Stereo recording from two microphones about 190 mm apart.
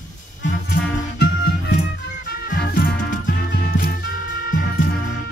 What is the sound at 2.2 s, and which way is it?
Music, 55° left (ahead or behind).